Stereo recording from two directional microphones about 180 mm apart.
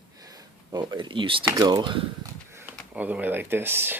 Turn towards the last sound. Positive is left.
turn(degrees=-10)  # may be behind; listen again after turning